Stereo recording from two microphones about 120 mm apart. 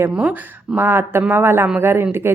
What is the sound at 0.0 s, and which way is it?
A woman's voice, 15° right (ahead or behind).